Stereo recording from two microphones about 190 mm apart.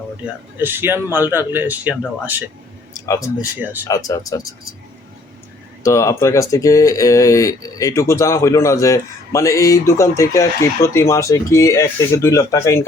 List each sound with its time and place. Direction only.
0.5 s speech: 10° right (ahead or behind)
2.9 s a sound: 15° left (ahead or behind)
3.6 s speech: 10° right (ahead or behind)
3.8 s speech: 20° left (ahead or behind)
5.8 s speech: 15° left (ahead or behind)